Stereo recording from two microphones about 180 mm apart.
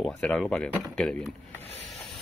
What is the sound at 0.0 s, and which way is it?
Speech, 5° left (ahead or behind).